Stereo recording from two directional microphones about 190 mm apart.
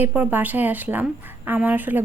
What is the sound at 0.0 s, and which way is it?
Speech, 10° right (ahead or behind).